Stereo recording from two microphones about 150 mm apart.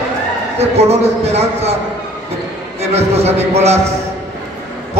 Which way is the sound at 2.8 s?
45° right (ahead or behind).